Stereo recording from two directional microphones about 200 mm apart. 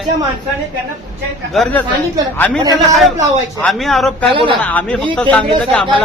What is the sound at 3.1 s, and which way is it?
Speech, 35° right (ahead or behind).